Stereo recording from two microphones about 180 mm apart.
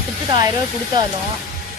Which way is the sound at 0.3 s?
20° right (ahead or behind).